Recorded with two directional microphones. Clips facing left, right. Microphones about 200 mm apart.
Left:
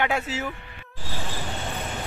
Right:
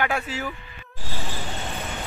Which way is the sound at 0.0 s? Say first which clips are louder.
Left 1 dB; 20° left (ahead or behind).